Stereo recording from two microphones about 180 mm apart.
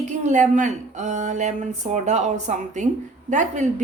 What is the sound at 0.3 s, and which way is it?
A woman's voice, 40° right (ahead or behind).